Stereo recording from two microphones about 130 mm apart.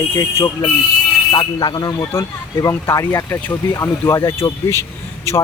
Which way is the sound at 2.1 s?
20° left (ahead or behind).